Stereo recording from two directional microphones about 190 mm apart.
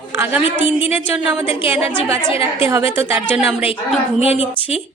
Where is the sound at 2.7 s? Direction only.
15° right (ahead or behind).